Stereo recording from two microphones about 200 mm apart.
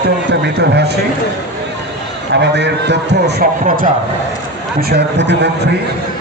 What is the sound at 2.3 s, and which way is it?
A man's voice, 60° right (ahead or behind).